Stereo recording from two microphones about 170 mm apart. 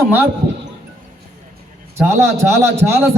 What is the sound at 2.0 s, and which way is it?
A man's voice, 15° right (ahead or behind).